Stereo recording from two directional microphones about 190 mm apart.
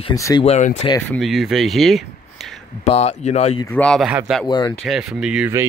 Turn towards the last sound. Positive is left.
turn(degrees=-5)  # may be behind; listen again after turning